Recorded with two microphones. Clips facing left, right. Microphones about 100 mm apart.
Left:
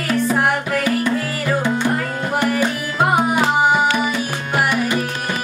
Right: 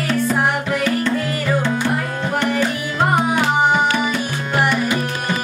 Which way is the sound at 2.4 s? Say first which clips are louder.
Even; 5° left (ahead or behind).